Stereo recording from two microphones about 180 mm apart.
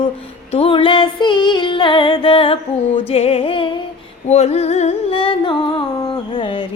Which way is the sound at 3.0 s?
35° left (ahead or behind).